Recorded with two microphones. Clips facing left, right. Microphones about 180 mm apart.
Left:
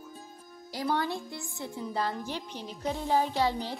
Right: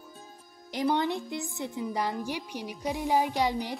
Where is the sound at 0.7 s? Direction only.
20° right (ahead or behind).